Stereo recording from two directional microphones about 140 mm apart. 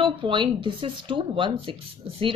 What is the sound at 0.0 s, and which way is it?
Speech, 35° right (ahead or behind).